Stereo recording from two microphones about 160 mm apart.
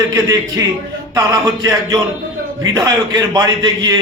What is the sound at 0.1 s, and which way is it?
A man's voice, 20° right (ahead or behind).